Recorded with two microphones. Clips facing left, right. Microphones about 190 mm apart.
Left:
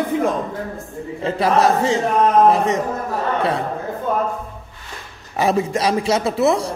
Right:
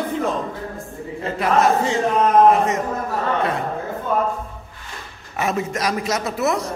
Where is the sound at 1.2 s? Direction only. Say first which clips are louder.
Left 4 dB; 30° left (ahead or behind).